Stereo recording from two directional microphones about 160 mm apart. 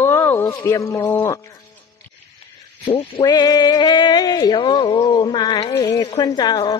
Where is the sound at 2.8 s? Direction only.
35° left (ahead or behind).